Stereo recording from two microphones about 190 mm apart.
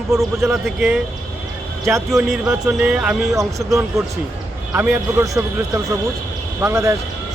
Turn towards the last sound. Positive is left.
turn(degrees=-15)  # may be behind; listen again after turning